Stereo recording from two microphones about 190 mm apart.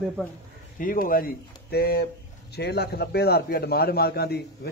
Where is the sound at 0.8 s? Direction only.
45° left (ahead or behind).